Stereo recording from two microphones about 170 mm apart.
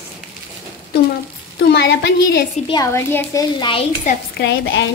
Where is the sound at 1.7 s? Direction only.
85° left.